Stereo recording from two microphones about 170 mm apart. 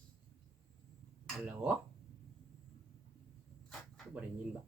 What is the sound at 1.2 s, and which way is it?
Speech, 5° right (ahead or behind).